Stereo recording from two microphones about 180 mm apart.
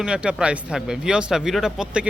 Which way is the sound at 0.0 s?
5° right (ahead or behind).